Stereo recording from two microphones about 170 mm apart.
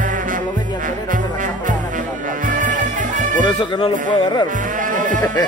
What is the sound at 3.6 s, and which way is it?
Speech, 30° left (ahead or behind).